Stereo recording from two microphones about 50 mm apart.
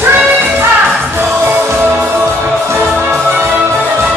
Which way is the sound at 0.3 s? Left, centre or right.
Right.